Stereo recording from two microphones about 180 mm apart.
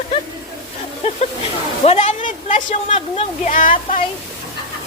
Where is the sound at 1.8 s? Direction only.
35° left (ahead or behind).